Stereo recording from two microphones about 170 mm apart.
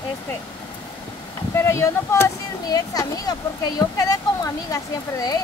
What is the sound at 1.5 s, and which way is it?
Speech, 15° left (ahead or behind).